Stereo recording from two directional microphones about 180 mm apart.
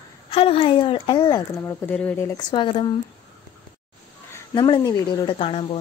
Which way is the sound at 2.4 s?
25° left (ahead or behind).